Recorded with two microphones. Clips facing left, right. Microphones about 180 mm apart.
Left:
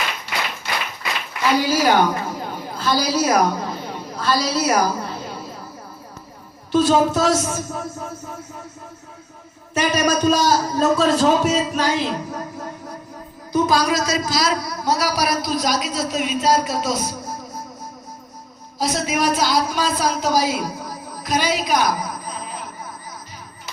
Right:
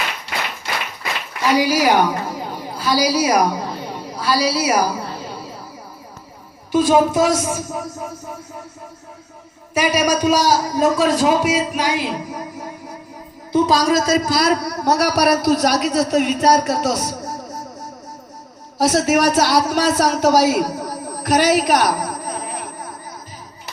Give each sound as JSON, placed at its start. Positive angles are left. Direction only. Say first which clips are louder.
{"t": 1.5, "sound": "a woman's voice", "louder": "right 2 dB", "side_deg": -10}
{"t": 6.7, "sound": "a man's voice", "louder": "right 2 dB", "side_deg": -10}
{"t": 9.7, "sound": "a man's voice", "louder": "right 2 dB", "side_deg": -10}
{"t": 13.5, "sound": "a woman's voice", "louder": "right 3 dB", "side_deg": -25}
{"t": 13.7, "sound": "a man's voice", "louder": "right 4 dB", "side_deg": -45}
{"t": 18.8, "sound": "a man's voice", "louder": "right 6 dB", "side_deg": -70}